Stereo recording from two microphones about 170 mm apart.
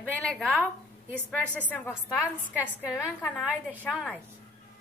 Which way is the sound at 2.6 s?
10° right (ahead or behind).